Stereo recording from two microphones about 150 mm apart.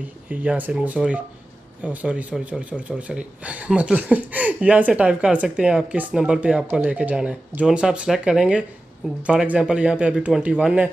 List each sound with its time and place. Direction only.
0.3 s speech: 10° right (ahead or behind)